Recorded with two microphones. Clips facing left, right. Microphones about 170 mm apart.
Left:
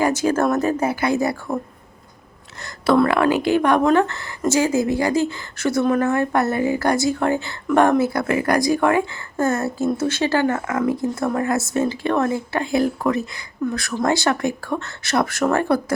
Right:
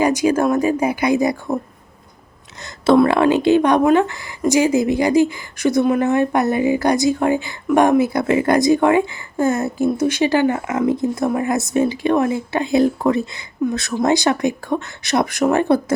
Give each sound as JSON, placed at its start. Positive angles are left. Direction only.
{"t": 0.0, "sound": "speech", "side_deg": -15}
{"t": 2.6, "sound": "speech", "side_deg": -20}